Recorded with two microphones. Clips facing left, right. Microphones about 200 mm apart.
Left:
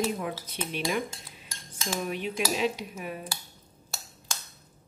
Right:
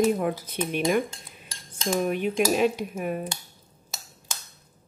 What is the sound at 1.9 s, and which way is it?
Cutlery, 50° right (ahead or behind).